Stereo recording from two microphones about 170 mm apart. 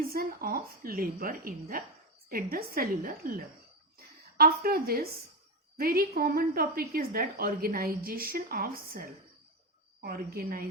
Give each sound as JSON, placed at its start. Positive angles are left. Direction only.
{"t": 0.1, "sound": "a woman's voice", "side_deg": -60}